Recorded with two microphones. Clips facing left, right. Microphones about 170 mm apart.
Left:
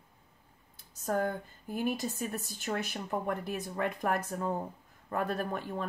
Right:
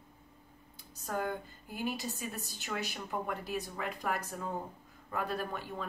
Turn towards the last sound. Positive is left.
turn(degrees=50)  # may be behind; listen again after turning